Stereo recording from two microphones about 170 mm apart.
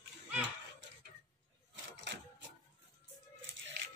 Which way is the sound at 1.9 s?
90° right.